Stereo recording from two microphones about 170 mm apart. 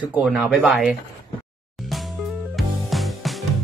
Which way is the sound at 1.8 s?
Centre (ahead or behind).